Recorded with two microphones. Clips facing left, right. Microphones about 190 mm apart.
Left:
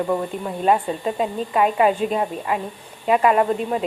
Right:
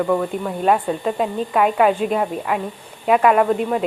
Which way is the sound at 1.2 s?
Centre (ahead or behind).